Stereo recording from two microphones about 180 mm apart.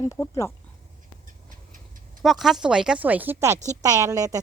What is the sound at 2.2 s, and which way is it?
A woman's voice, centre (ahead or behind).